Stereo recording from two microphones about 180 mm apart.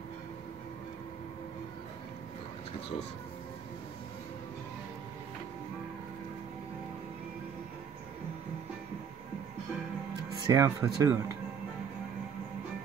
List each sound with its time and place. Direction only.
10.4 s speech: 15° right (ahead or behind)